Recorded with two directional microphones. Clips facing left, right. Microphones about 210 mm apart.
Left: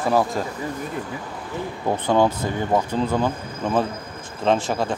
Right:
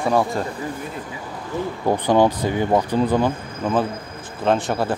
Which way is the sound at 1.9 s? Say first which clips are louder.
Right 2 dB; 15° right (ahead or behind).